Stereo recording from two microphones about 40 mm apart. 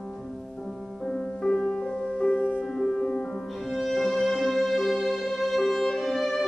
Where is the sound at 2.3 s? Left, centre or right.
Left.